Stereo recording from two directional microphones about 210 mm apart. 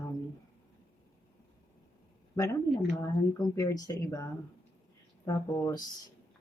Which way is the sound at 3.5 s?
15° left (ahead or behind).